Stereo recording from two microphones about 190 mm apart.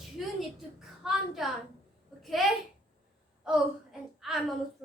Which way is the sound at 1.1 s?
Centre (ahead or behind).